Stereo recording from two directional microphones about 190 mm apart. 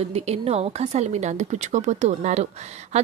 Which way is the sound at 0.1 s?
35° right (ahead or behind).